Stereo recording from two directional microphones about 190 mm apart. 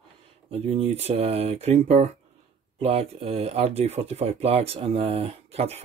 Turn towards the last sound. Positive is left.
turn(degrees=-35)  # may be behind; listen again after turning